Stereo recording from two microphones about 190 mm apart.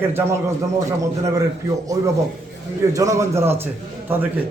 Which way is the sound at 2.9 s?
15° right (ahead or behind).